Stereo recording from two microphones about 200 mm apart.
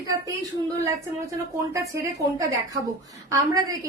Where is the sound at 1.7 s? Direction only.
15° right (ahead or behind).